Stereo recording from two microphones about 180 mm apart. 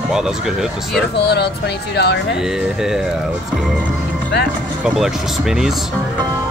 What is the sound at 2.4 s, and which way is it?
Speech, centre (ahead or behind).